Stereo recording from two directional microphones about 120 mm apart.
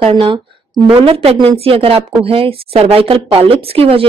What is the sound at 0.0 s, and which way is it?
Speech, 50° right (ahead or behind).